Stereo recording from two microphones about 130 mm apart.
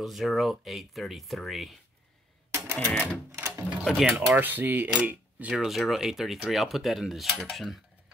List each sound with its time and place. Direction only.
0.0 s speech: centre (ahead or behind)
2.5 s typewriter: 20° right (ahead or behind)
3.3 s sewing machine: 20° right (ahead or behind)
3.8 s speech: centre (ahead or behind)
4.3 s speech: 15° right (ahead or behind)